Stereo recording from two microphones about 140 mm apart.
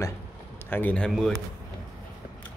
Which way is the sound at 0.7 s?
10° left (ahead or behind).